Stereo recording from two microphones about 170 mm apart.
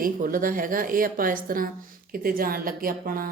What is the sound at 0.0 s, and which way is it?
A woman's voice, 55° right (ahead or behind).